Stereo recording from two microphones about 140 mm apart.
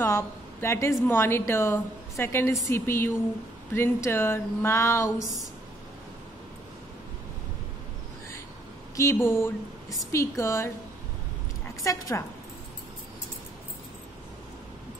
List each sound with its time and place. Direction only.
0.0 s a sound: 20° left (ahead or behind)
1.0 s a woman's voice: 15° left (ahead or behind)
8.9 s a woman's voice: 20° left (ahead or behind)
11.8 s a woman's voice: 20° left (ahead or behind)